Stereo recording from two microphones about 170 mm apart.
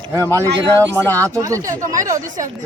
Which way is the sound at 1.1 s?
20° right (ahead or behind).